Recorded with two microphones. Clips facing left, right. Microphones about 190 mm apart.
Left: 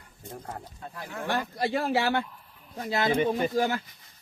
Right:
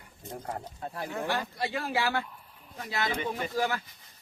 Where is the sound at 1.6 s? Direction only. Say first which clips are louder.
Left 5 dB; 30° left (ahead or behind).